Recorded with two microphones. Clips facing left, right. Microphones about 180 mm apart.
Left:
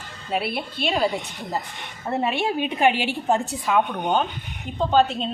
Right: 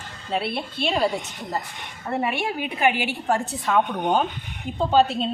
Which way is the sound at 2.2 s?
25° left (ahead or behind).